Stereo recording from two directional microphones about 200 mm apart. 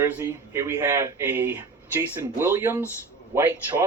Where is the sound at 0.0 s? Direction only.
10° right (ahead or behind).